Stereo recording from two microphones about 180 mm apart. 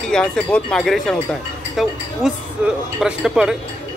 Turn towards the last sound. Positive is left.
turn(degrees=-5)  # may be behind; listen again after turning